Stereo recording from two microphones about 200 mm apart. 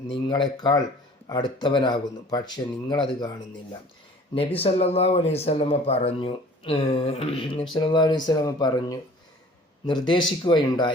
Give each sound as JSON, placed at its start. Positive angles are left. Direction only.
{"t": 0.1, "sound": "speech", "side_deg": 20}
{"t": 4.4, "sound": "speech", "side_deg": 30}